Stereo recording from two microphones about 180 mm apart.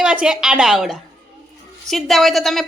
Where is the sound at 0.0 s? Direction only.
5° right (ahead or behind).